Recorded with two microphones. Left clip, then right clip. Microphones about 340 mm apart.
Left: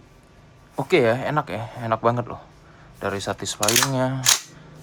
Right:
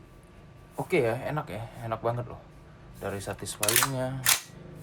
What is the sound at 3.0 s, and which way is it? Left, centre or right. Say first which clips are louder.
Speech: left 9 dB; left.